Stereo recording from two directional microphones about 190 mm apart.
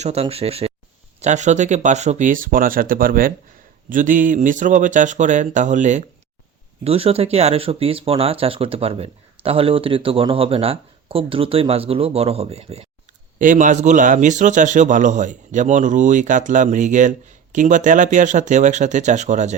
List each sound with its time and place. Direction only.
0.0 s a man's voice: 35° right (ahead or behind)